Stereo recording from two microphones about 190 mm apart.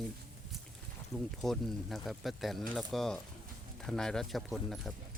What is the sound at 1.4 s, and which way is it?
Speech, centre (ahead or behind).